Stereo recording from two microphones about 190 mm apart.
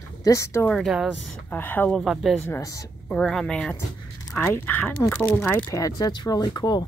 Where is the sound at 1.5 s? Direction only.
10° left (ahead or behind).